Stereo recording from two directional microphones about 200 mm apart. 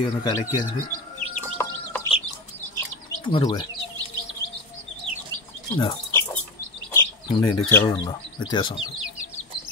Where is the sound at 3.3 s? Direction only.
25° left (ahead or behind).